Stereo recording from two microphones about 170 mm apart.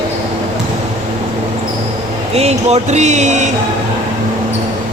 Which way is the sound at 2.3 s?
40° right (ahead or behind).